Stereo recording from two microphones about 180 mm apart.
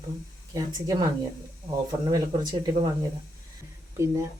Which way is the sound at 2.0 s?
20° right (ahead or behind).